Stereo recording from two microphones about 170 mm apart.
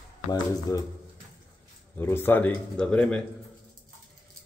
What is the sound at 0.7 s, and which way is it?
Speech, 20° left (ahead or behind).